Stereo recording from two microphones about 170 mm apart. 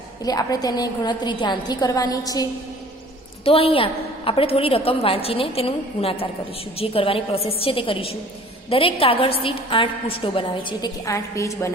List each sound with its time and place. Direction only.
0.2 s a woman's voice: 20° left (ahead or behind)
3.4 s a woman's voice: 35° left (ahead or behind); by 11.7 s 15° left (ahead or behind)